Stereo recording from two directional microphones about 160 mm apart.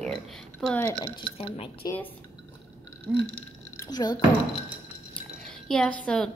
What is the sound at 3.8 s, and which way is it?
Speech, 25° left (ahead or behind).